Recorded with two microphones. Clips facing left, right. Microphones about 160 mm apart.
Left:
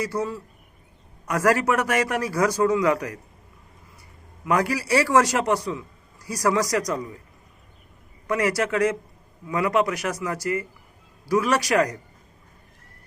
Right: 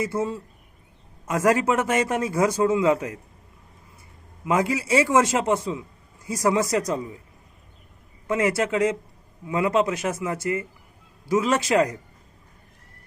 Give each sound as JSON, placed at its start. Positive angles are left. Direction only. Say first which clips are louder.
{"t": 0.0, "sound": "a man's voice", "louder": "right 1 dB", "side_deg": -25}
{"t": 4.4, "sound": "a man's voice", "louder": "even", "side_deg": -20}
{"t": 8.3, "sound": "a man's voice", "louder": "right 1 dB", "side_deg": -20}